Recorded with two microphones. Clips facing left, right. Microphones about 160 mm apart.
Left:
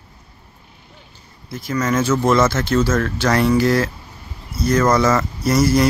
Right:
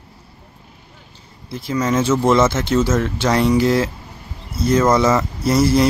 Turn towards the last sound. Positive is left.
turn(degrees=-25)  # may be behind; listen again after turning